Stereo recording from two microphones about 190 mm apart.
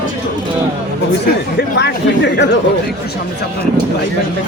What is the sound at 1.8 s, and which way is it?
Speech, 65° left (ahead or behind).